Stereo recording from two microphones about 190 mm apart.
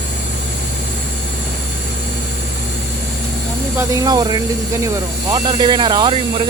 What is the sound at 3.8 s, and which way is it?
Speech, 20° right (ahead or behind).